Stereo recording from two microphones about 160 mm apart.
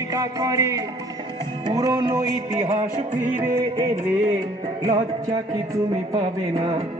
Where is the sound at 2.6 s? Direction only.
45° right (ahead or behind).